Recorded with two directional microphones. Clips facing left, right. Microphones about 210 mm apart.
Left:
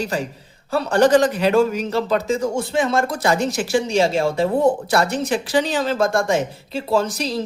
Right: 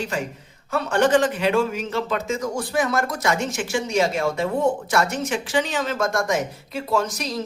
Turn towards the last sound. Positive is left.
turn(degrees=30)  # may be behind; listen again after turning